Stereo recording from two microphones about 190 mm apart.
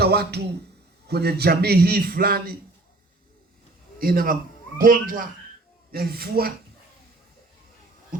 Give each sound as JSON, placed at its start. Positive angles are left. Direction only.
{"t": 0.0, "sound": "a man's voice", "side_deg": -60}
{"t": 3.9, "sound": "a man's voice", "side_deg": -50}
{"t": 8.1, "sound": "a sound", "side_deg": -45}